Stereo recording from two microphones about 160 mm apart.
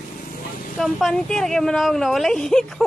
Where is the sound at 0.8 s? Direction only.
Centre (ahead or behind).